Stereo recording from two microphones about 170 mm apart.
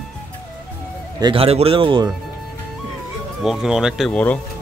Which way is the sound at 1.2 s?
35° right (ahead or behind).